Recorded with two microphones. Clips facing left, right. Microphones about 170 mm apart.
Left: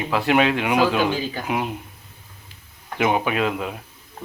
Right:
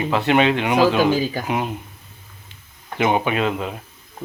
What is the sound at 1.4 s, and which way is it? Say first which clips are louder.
Speech: right 1 dB; centre (ahead or behind).